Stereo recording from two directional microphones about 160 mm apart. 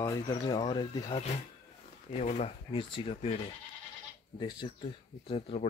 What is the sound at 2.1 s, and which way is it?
Speech, 45° left (ahead or behind).